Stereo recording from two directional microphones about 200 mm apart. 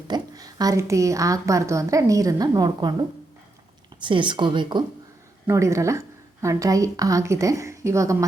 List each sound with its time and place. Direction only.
0.1 s a woman's voice: 20° right (ahead or behind)
4.0 s a woman's voice: 25° right (ahead or behind)